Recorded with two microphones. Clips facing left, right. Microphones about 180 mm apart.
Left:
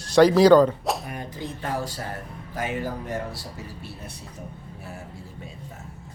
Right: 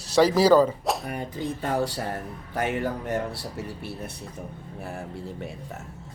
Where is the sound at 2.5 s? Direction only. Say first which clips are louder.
Right 2 dB; 65° right (ahead or behind).